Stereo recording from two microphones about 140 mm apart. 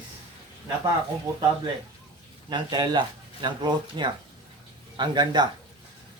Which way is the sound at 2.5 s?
30° right (ahead or behind).